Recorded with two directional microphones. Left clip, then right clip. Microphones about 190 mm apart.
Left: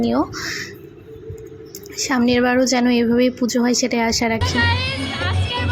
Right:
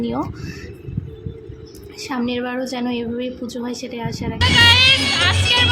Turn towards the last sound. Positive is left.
turn(degrees=-10)  # may be behind; listen again after turning